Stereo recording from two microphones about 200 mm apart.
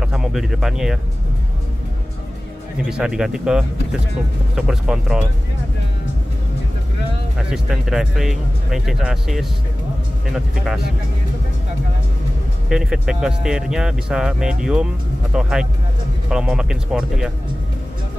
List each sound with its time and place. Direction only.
0.0 s speech: centre (ahead or behind)
2.9 s speech: 5° right (ahead or behind)
7.3 s speech: centre (ahead or behind)
12.6 s speech: 5° right (ahead or behind)